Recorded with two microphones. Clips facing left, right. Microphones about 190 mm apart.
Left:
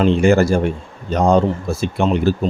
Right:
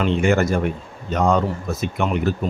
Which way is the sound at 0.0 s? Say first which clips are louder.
Left 5 dB; 35° left (ahead or behind).